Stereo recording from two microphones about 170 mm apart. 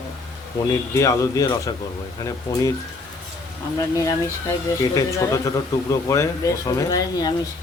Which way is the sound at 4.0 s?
15° left (ahead or behind).